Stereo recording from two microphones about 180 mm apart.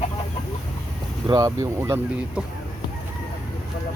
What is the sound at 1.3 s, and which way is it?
Speech, 20° right (ahead or behind).